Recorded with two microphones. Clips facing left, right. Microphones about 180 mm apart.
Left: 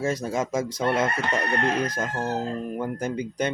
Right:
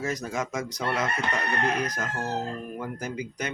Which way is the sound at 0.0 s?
30° left (ahead or behind).